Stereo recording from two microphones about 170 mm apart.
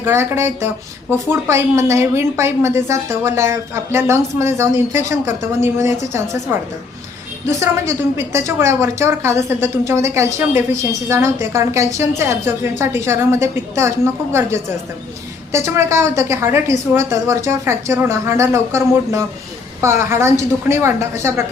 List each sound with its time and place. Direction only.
0.0 s a woman's voice: 15° right (ahead or behind)